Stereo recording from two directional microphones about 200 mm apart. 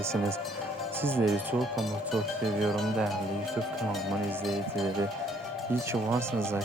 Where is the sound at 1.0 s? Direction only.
10° right (ahead or behind).